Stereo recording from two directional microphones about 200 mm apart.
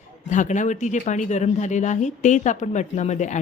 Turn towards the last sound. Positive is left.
turn(degrees=35)  # may be behind; listen again after turning